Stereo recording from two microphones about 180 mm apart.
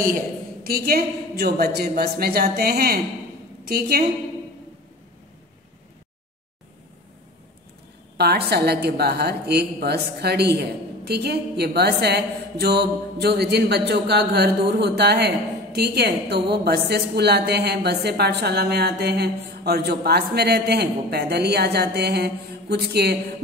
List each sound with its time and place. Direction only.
0.7 s a woman's voice: 55° right (ahead or behind)
8.2 s a woman's voice: 65° right (ahead or behind)